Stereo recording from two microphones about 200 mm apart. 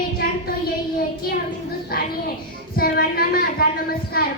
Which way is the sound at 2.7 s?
50° left (ahead or behind).